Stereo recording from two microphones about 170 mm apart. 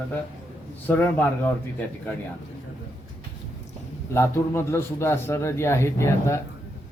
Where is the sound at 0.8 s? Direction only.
10° left (ahead or behind).